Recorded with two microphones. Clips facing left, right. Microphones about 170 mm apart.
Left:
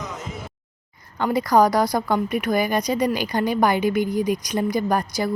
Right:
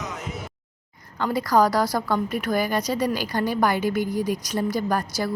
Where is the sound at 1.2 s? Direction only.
20° left (ahead or behind).